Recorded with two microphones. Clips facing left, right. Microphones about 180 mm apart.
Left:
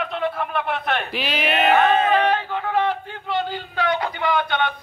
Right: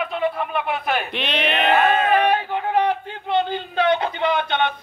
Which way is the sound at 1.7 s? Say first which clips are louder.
Even; 10° right (ahead or behind).